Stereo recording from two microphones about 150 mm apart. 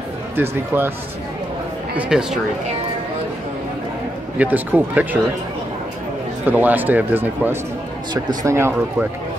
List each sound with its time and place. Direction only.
0.4 s speech: 15° right (ahead or behind)
2.0 s speech: 5° right (ahead or behind)
4.4 s speech: 10° right (ahead or behind)
6.4 s speech: 10° right (ahead or behind)